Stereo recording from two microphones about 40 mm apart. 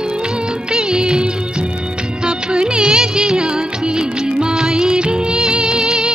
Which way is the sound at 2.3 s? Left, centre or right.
Right.